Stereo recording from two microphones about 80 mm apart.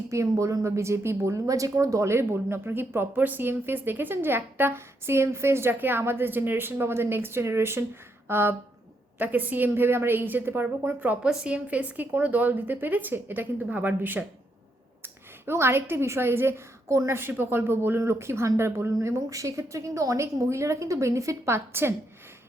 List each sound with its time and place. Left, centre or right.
0.1 s a woman's voice: right